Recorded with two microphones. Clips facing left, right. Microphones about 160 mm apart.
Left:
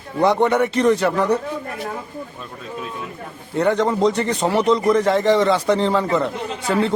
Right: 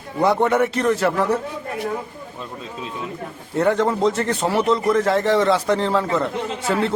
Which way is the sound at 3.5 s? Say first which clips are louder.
Even; centre (ahead or behind).